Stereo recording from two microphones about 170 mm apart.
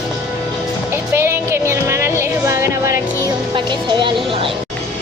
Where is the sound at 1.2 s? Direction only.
15° right (ahead or behind).